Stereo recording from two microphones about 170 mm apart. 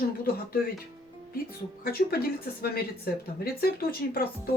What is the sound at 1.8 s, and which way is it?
Speech, 65° left (ahead or behind).